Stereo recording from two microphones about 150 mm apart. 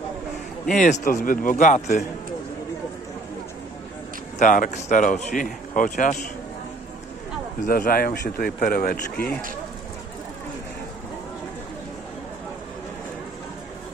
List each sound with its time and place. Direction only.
0.7 s speech: 55° left (ahead or behind)
4.4 s speech: 60° left (ahead or behind)
7.6 s a man's voice: 70° left (ahead or behind); by 8.5 s 90° left
8.5 s a man's voice: 65° left (ahead or behind); by 9.3 s 90° left